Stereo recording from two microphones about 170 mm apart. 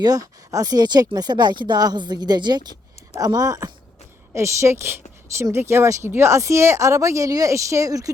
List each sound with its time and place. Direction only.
0.0 s speech: 20° right (ahead or behind)